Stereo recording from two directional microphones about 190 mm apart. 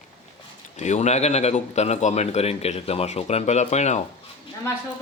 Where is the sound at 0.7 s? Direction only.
40° left (ahead or behind).